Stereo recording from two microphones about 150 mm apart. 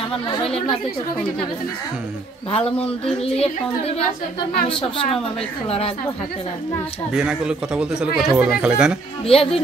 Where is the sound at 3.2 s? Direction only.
40° left (ahead or behind).